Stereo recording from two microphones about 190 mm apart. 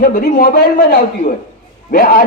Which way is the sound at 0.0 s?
50° left (ahead or behind).